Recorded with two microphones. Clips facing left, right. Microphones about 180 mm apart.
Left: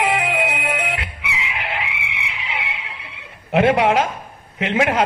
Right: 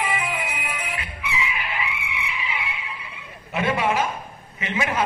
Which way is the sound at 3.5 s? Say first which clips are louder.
Left 7 dB; 70° left (ahead or behind).